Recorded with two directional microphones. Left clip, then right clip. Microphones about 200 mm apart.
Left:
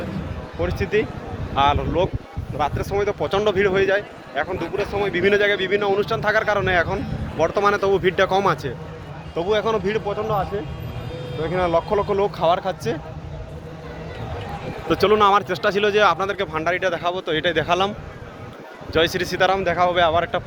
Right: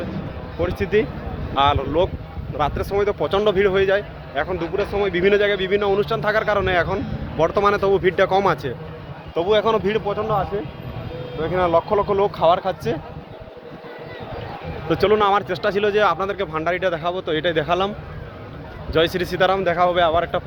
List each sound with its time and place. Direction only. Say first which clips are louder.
0.6 s speech: right 2 dB; centre (ahead or behind)
9.3 s a man's voice: right 3 dB; 25° right (ahead or behind); by 13.0 s 10° right (ahead or behind)
14.8 s speech: left 1 dB; 15° left (ahead or behind)
18.9 s speech: right 1 dB; centre (ahead or behind)